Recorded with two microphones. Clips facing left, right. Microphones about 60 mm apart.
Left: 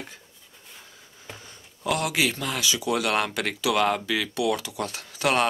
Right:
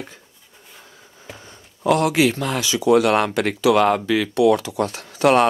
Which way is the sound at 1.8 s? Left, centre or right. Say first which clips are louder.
Right 8 dB; right.